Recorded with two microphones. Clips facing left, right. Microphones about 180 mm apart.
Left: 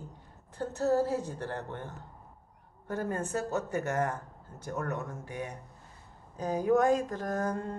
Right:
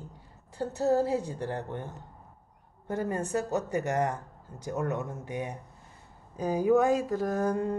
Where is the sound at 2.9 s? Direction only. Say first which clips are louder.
Right 3 dB; 10° right (ahead or behind).